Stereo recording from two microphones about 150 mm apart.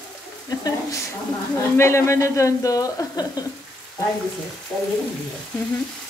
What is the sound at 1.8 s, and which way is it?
Speech, 20° left (ahead or behind).